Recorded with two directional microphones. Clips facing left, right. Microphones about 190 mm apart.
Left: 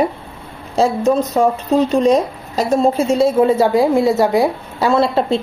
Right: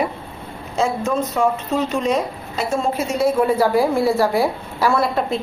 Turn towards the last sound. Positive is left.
turn(degrees=30)  # may be behind; listen again after turning